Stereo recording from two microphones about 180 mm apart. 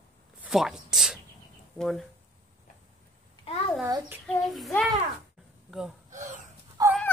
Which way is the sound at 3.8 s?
15° right (ahead or behind).